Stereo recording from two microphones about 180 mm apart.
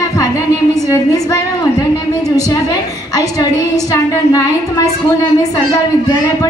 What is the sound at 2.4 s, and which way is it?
A woman's voice, 20° left (ahead or behind).